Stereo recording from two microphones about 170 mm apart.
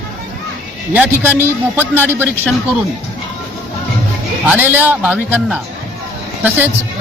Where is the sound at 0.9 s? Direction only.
10° right (ahead or behind).